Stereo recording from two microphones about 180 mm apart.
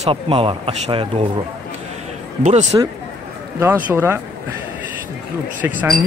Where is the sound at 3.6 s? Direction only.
10° right (ahead or behind).